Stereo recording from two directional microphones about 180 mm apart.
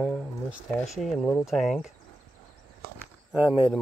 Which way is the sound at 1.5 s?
Centre (ahead or behind).